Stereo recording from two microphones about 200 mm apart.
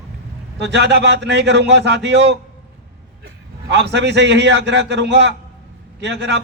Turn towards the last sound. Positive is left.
turn(degrees=-60)  # may be behind; listen again after turning